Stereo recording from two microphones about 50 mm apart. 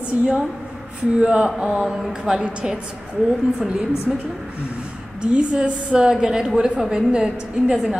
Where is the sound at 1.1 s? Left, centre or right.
Right.